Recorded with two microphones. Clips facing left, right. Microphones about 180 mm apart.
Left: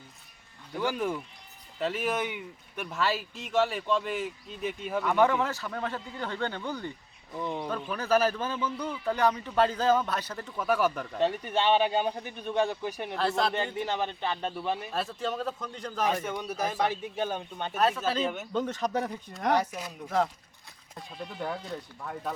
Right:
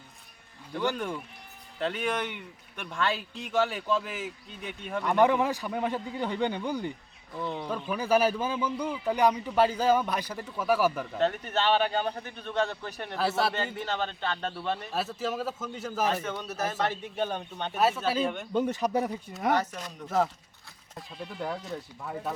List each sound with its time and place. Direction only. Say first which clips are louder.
0.8 s speech: left 1 dB; 5° left (ahead or behind)
5.1 s a man's voice: right 2 dB; 15° right (ahead or behind)
7.3 s speech: left 1 dB; 15° left (ahead or behind)
7.9 s a man's voice: right 1 dB; 10° right (ahead or behind)
11.2 s speech: left 1 dB; 10° left (ahead or behind)
13.1 s speech: right 1 dB; 5° right (ahead or behind)
13.7 s speech: left 1 dB; 10° left (ahead or behind)
14.9 s speech: right 1 dB; 5° right (ahead or behind)
16.2 s speech: left 1 dB; 10° left (ahead or behind)
17.7 s a man's voice: right 1 dB; 5° right (ahead or behind)
19.5 s speech: left 1 dB; 10° left (ahead or behind)
20.1 s speech: right 1 dB; 5° right (ahead or behind)